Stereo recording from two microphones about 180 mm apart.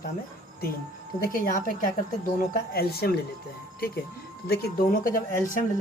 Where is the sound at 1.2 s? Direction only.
50° left (ahead or behind).